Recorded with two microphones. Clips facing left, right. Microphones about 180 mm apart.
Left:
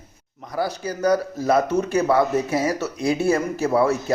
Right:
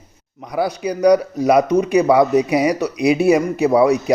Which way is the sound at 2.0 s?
15° right (ahead or behind).